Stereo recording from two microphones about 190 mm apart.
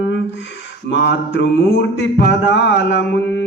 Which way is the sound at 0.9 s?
70° left (ahead or behind).